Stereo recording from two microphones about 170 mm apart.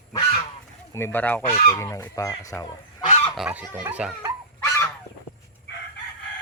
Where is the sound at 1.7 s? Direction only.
15° left (ahead or behind).